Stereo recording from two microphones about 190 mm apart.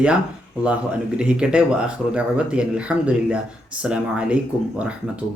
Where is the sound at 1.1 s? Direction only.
5° right (ahead or behind).